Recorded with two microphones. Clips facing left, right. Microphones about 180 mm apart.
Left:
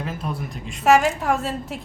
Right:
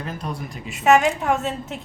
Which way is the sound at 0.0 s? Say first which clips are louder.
Left 1 dB; 5° left (ahead or behind).